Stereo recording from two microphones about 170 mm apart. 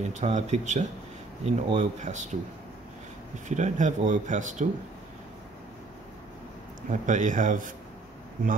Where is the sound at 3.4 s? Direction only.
45° right (ahead or behind).